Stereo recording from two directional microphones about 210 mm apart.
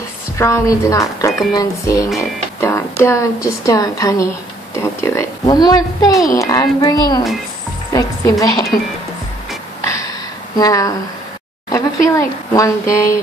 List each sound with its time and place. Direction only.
0.4 s speech: 15° left (ahead or behind)
4.7 s a sound: 15° left (ahead or behind)
6.2 s speech: 15° left (ahead or behind)
9.8 s gasp: 15° left (ahead or behind)
10.6 s speech: 15° left (ahead or behind)